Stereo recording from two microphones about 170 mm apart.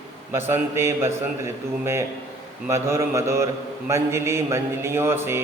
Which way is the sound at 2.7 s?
15° right (ahead or behind).